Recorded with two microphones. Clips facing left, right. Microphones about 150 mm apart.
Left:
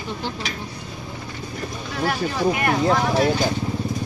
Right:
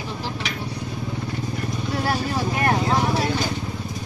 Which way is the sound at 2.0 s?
30° right (ahead or behind).